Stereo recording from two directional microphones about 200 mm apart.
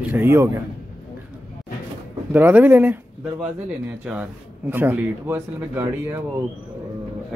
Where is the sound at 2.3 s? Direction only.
10° right (ahead or behind).